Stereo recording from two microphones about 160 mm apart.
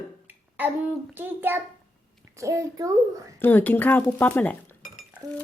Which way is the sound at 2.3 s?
20° right (ahead or behind).